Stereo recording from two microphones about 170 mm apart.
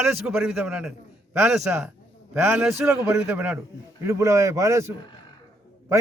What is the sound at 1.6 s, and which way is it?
A man's voice, 15° right (ahead or behind).